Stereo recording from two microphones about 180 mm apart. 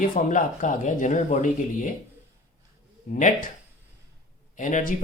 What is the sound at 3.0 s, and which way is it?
Speech, 45° left (ahead or behind).